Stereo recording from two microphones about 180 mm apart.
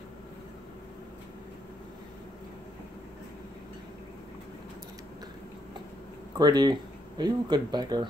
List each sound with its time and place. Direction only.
6.3 s speech: 20° right (ahead or behind)